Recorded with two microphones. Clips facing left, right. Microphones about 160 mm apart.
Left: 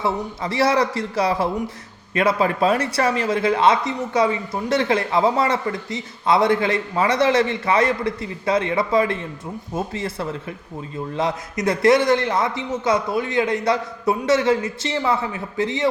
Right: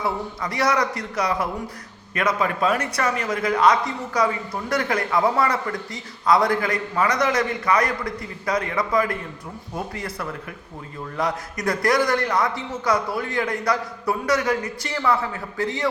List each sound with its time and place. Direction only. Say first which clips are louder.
0.0 s speech: left 3 dB; 25° left (ahead or behind)